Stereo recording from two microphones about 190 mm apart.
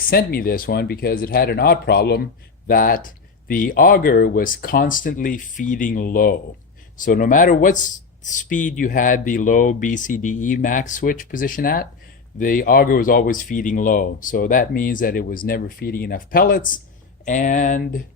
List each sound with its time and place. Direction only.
0.0 s speech: 50° left (ahead or behind)